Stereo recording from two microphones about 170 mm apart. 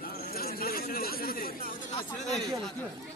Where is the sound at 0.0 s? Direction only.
60° left (ahead or behind).